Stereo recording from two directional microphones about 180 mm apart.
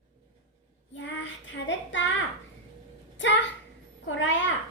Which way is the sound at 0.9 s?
85° left.